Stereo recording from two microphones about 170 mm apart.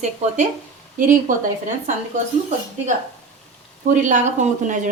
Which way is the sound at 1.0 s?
55° right (ahead or behind).